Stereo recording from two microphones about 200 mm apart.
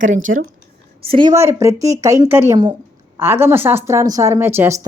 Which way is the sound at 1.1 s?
20° right (ahead or behind).